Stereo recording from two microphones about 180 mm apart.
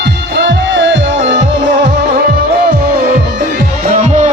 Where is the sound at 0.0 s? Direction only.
70° right (ahead or behind); by 1.4 s 90° right.